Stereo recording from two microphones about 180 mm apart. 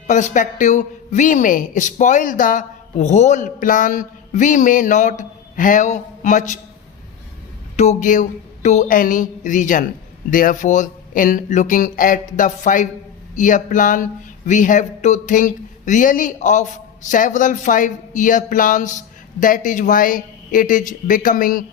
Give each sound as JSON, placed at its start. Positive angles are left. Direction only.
{"t": 0.1, "sound": "speech", "side_deg": 45}
{"t": 7.8, "sound": "speech", "side_deg": 40}